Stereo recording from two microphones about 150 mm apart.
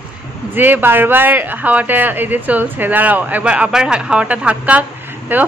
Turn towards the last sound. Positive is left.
turn(degrees=-10)  # may be behind; listen again after turning